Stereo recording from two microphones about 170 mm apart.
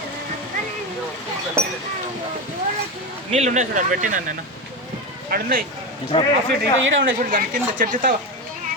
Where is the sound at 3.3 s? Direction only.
40° right (ahead or behind).